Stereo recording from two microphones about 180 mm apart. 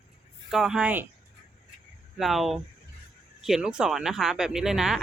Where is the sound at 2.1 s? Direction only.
Centre (ahead or behind).